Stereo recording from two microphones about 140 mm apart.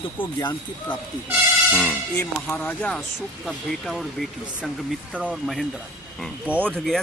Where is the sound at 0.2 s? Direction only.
30° left (ahead or behind).